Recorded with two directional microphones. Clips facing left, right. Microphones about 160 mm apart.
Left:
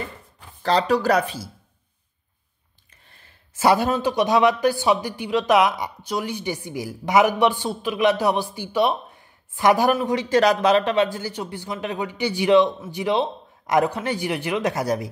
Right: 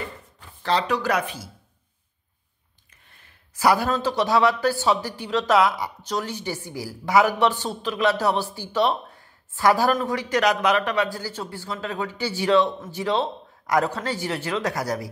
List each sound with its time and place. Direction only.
0.6 s speech: 40° left (ahead or behind)
3.1 s a sound: 30° left (ahead or behind)
3.9 s speech: 15° left (ahead or behind)
10.3 s speech: 30° left (ahead or behind)